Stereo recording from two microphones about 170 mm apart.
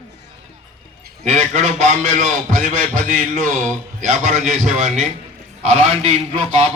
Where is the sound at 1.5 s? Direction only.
45° right (ahead or behind).